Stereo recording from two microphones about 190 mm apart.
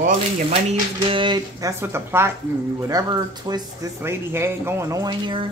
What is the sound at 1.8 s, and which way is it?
Speech, 10° right (ahead or behind).